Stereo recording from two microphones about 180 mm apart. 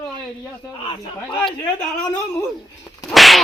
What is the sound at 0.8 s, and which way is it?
Speech, 25° left (ahead or behind).